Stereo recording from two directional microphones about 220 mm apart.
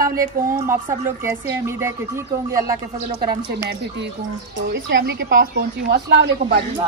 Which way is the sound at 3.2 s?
45° right (ahead or behind).